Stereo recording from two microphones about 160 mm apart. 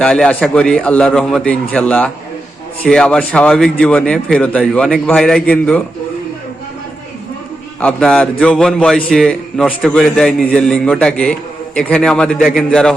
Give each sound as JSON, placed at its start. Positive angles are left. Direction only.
{"t": 0.0, "sound": "a man's voice", "side_deg": 5}
{"t": 7.8, "sound": "a man's voice", "side_deg": 5}